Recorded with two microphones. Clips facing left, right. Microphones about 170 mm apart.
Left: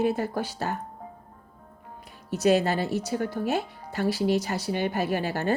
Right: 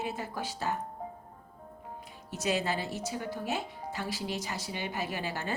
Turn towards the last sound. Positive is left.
turn(degrees=60)  # may be behind; listen again after turning